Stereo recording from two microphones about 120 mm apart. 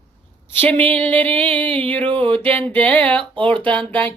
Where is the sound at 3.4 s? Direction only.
45° right (ahead or behind).